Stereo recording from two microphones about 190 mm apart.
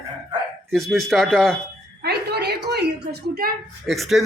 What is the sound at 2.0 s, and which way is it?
Speech, 60° right (ahead or behind).